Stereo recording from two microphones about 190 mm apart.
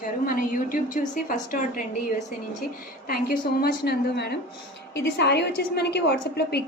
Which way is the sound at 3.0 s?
55° left (ahead or behind).